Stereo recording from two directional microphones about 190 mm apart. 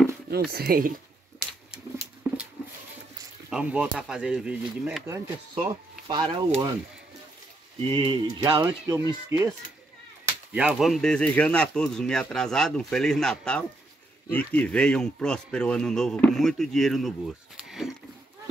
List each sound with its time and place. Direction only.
0.3 s speech: 55° right (ahead or behind)
2.3 s a sound: 15° right (ahead or behind)
3.4 s speech: 5° right (ahead or behind)
5.5 s speech: 20° right (ahead or behind)
7.9 s speech: 25° right (ahead or behind); by 17.1 s centre (ahead or behind)
17.6 s a sound: centre (ahead or behind)